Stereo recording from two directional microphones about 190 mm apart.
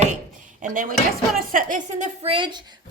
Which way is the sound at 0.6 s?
45° right (ahead or behind).